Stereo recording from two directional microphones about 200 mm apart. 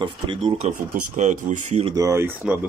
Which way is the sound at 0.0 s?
30° right (ahead or behind).